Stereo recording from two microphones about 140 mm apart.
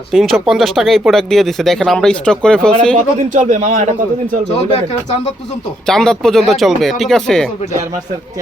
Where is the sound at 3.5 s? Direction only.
60° right (ahead or behind).